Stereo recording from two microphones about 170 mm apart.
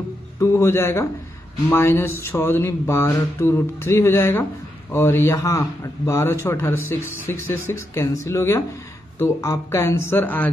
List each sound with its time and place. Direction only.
0.4 s a man's voice: 15° left (ahead or behind)